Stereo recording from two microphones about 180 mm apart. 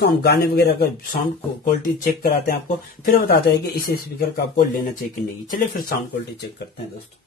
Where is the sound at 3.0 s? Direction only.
55° left (ahead or behind).